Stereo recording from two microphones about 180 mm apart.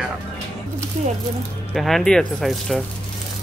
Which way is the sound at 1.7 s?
Centre (ahead or behind).